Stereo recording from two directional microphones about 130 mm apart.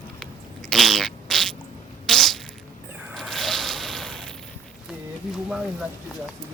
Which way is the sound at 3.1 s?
Centre (ahead or behind).